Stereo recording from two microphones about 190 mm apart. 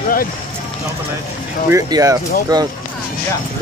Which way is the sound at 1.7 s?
15° right (ahead or behind).